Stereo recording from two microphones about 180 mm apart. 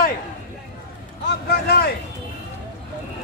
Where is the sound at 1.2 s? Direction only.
60° left (ahead or behind).